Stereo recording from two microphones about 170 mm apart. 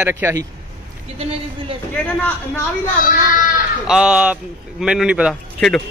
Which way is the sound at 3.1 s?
50° left (ahead or behind).